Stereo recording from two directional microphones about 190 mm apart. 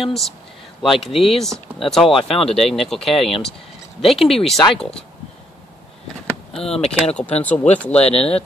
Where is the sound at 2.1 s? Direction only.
30° left (ahead or behind).